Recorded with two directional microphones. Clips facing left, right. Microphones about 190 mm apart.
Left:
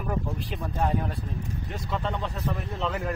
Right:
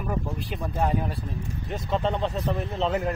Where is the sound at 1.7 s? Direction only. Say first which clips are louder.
Right 6 dB; 20° right (ahead or behind).